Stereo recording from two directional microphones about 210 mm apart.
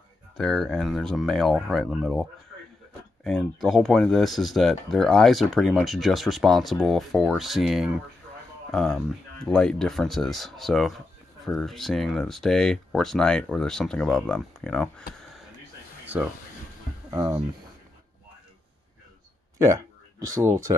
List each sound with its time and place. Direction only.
0.4 s speech: centre (ahead or behind)
3.6 s speech: centre (ahead or behind)
17.1 s speech: 15° right (ahead or behind)
19.6 s speech: 15° right (ahead or behind)